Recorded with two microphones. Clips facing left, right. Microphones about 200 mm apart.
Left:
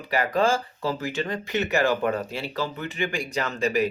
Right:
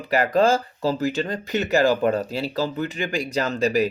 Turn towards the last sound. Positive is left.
turn(degrees=-35)  # may be behind; listen again after turning